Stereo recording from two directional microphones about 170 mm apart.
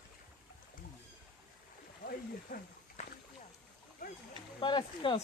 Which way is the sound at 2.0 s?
55° left (ahead or behind).